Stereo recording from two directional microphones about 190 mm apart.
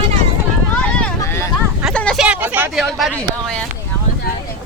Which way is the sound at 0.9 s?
5° left (ahead or behind).